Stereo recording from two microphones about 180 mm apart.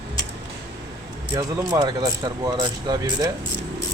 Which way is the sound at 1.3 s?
20° right (ahead or behind).